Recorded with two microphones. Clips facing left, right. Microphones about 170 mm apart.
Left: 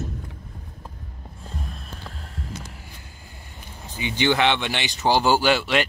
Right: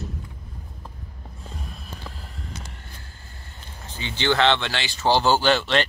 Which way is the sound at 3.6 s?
15° left (ahead or behind).